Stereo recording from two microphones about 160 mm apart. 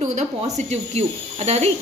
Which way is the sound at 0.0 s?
45° right (ahead or behind).